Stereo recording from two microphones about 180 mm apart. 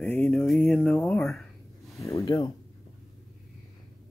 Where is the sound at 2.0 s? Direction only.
15° left (ahead or behind).